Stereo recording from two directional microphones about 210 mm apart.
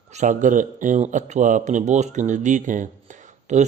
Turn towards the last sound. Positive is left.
turn(degrees=-35)  # may be behind; listen again after turning